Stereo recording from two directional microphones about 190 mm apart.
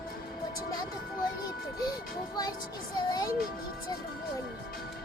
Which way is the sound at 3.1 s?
20° left (ahead or behind).